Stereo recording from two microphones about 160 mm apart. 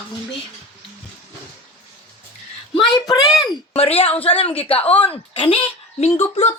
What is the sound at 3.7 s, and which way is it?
A woman's voice, 40° left (ahead or behind).